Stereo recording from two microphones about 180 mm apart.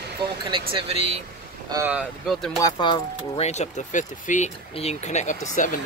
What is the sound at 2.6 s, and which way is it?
Speech, 20° left (ahead or behind).